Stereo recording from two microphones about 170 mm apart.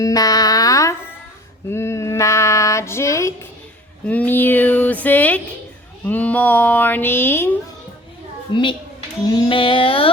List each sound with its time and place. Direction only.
0.0 s a sound: 20° left (ahead or behind)
1.7 s female singing: 15° left (ahead or behind)
4.0 s speech: 10° left (ahead or behind)
8.5 s a woman's voice: 25° left (ahead or behind)
9.3 s music: 30° left (ahead or behind)